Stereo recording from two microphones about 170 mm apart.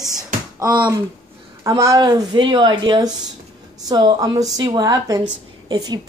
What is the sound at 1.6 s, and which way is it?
A woman's voice, 20° right (ahead or behind).